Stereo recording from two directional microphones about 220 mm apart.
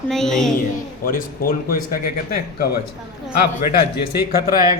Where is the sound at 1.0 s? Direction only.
40° left (ahead or behind).